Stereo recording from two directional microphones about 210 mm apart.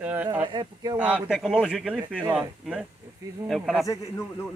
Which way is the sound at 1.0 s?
5° right (ahead or behind).